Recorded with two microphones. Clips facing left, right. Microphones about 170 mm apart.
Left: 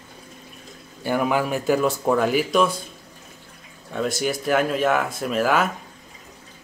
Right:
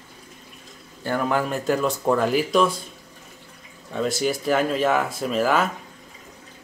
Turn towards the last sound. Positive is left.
turn(degrees=0)  # may be behind; listen again after turning